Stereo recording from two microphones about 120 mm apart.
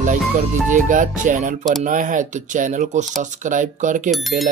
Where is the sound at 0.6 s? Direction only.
90° right.